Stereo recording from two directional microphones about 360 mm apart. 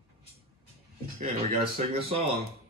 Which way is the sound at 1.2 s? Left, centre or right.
Centre.